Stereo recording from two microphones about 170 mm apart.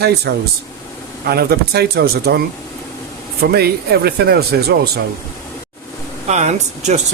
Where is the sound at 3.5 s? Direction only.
70° right (ahead or behind).